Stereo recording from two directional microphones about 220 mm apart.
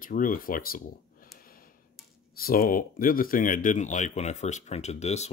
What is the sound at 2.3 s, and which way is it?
Speech, 40° left (ahead or behind).